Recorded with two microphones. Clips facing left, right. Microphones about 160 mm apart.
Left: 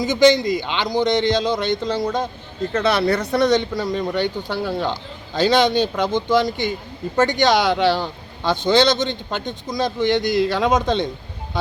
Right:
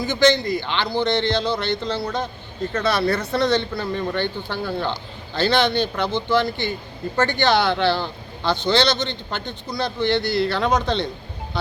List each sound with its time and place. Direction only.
0.0 s speech: 15° left (ahead or behind)